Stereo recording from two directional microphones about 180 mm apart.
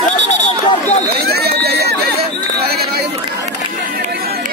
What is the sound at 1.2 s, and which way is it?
Run, 60° right (ahead or behind).